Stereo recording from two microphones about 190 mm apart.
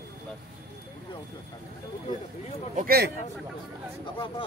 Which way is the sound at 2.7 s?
50° right (ahead or behind).